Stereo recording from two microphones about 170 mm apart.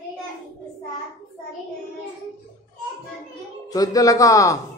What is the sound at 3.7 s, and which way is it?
Speech, 20° left (ahead or behind).